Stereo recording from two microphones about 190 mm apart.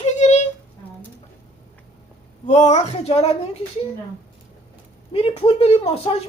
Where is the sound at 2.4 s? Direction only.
40° left (ahead or behind).